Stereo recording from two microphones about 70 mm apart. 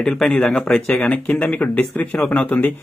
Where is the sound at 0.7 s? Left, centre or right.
Centre.